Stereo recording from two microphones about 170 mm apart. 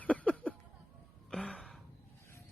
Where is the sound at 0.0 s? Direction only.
10° left (ahead or behind).